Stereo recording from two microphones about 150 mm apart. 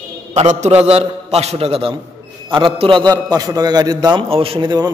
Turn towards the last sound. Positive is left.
turn(degrees=-25)  # may be behind; listen again after turning